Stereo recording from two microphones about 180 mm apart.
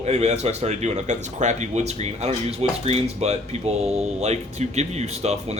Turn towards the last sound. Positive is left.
turn(degrees=-35)  # may be behind; listen again after turning